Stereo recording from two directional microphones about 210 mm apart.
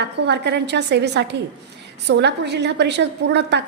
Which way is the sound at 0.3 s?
55° right (ahead or behind).